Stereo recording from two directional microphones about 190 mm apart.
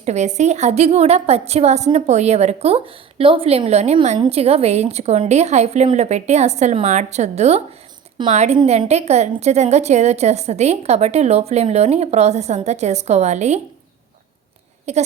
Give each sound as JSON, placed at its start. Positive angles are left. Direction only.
{"t": 0.0, "sound": "a woman's voice", "side_deg": -40}
{"t": 14.9, "sound": "a woman's voice", "side_deg": -35}